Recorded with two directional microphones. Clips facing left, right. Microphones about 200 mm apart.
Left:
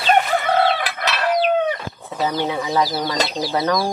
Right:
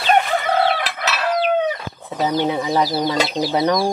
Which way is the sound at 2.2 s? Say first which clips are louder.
Right 3 dB; 20° right (ahead or behind).